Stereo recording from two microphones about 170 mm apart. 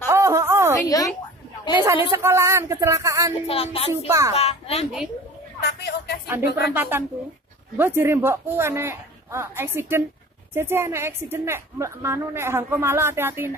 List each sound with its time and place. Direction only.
0.1 s a sound: 15° right (ahead or behind)
0.8 s a woman's voice: 20° left (ahead or behind)
1.8 s a woman's voice: 15° right (ahead or behind)
3.4 s a woman's voice: 35° left (ahead or behind)
5.6 s a sound: 75° left (ahead or behind)
6.2 s a woman's voice: 10° right (ahead or behind)